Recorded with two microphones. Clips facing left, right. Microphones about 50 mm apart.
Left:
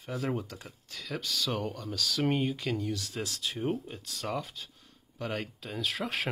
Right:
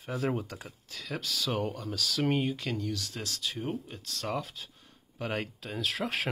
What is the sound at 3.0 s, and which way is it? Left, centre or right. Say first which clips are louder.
Speech: left 1 dB; centre.